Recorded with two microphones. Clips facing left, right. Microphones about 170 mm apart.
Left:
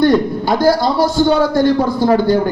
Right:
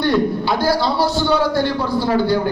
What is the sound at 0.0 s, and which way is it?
A man's voice, 45° left (ahead or behind).